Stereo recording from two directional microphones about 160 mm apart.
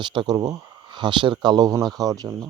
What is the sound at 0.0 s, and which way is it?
Speech, 30° right (ahead or behind).